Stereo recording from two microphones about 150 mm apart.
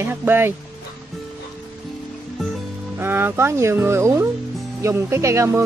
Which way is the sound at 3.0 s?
15° right (ahead or behind).